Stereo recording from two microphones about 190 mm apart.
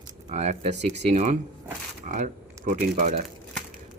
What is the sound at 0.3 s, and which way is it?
A man's voice, 35° right (ahead or behind).